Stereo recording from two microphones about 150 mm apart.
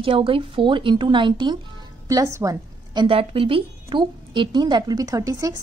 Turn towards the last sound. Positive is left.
turn(degrees=-25)  # may be behind; listen again after turning